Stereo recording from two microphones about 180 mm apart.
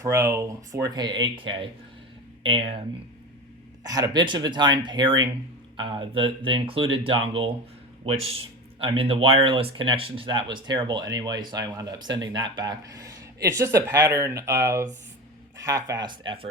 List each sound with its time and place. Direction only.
0.0 s speech: 15° right (ahead or behind)
3.8 s a man's voice: 20° right (ahead or behind)